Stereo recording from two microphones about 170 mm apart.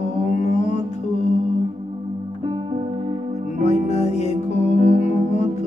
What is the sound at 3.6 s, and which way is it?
Music, 40° left (ahead or behind).